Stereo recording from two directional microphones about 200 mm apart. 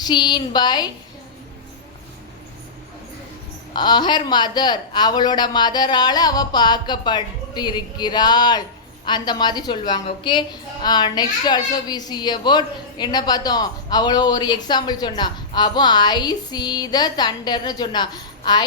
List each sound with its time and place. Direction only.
0.0 s a child's voice: 20° left (ahead or behind)
3.8 s a child's voice: 20° left (ahead or behind)